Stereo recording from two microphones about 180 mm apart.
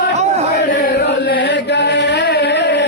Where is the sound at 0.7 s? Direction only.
55° left (ahead or behind); by 2.8 s 75° left (ahead or behind).